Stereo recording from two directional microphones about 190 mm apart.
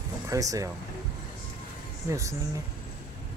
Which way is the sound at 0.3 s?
15° right (ahead or behind).